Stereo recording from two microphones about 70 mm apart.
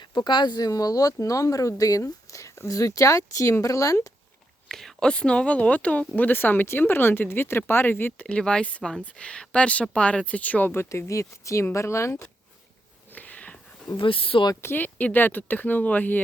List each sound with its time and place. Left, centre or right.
0.1 s speech: left
0.7 s speech: left
4.7 s speech: centre; by 8.3 s left
8.3 s speech: centre
10.7 s speech: left
13.1 s a sound: left
14.5 s speech: left
14.8 s speech: left